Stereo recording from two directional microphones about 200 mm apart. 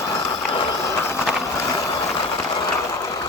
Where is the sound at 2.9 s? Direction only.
15° left (ahead or behind).